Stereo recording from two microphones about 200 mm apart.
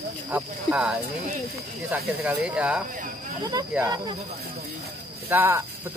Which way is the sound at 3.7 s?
20° right (ahead or behind).